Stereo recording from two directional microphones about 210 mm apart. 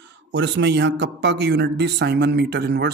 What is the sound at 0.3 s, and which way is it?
Speech, 60° right (ahead or behind).